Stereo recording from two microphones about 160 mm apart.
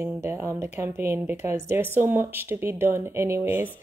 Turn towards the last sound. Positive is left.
turn(degrees=-10)  # may be behind; listen again after turning